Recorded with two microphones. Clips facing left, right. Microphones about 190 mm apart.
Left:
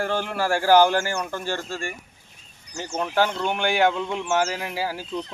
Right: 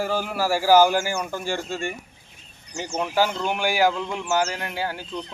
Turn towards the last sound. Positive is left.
turn(degrees=0)  # may be behind; listen again after turning